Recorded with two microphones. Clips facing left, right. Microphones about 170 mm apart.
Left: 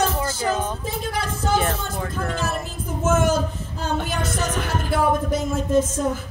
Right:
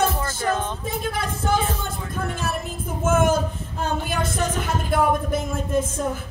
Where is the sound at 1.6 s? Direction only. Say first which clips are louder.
Left 3 dB; 60° left (ahead or behind).